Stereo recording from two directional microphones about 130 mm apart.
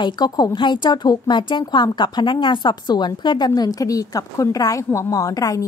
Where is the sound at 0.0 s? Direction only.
35° left (ahead or behind).